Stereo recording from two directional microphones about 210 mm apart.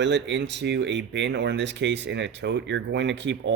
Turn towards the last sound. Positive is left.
turn(degrees=-55)  # may be behind; listen again after turning